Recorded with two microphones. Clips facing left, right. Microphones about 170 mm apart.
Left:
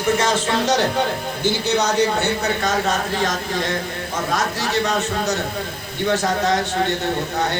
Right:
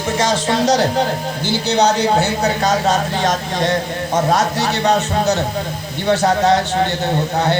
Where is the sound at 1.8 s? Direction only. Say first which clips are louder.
Right 6 dB; 75° right (ahead or behind).